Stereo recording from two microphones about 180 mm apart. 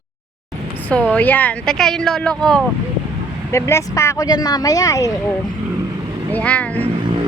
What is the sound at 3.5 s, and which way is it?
Speech, 15° left (ahead or behind).